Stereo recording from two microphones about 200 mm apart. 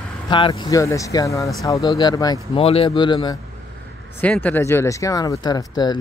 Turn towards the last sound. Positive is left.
turn(degrees=20)  # may be behind; listen again after turning